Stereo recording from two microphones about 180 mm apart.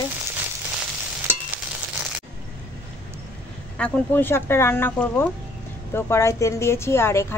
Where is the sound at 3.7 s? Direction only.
10° left (ahead or behind).